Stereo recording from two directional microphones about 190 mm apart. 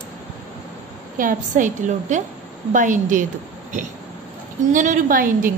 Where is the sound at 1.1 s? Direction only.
45° right (ahead or behind).